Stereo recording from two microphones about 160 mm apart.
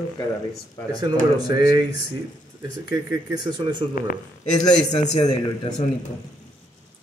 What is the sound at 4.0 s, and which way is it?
Speech, 50° left (ahead or behind).